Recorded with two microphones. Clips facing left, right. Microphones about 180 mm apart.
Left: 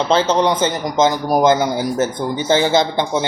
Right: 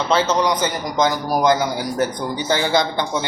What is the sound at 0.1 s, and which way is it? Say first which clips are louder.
A man's voice: left 2 dB; 30° left (ahead or behind).